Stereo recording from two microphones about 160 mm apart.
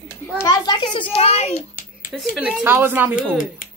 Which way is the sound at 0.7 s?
35° left (ahead or behind).